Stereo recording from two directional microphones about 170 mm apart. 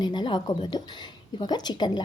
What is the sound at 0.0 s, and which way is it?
A woman's voice, 25° left (ahead or behind).